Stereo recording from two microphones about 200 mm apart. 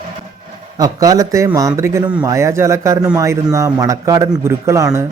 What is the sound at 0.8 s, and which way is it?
Speech, 20° right (ahead or behind).